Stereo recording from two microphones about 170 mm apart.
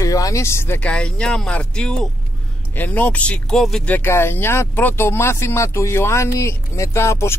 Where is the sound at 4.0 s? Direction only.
15° left (ahead or behind).